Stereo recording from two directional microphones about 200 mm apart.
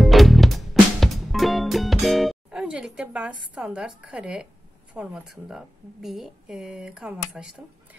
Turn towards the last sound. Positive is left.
turn(degrees=-5)  # may be behind; listen again after turning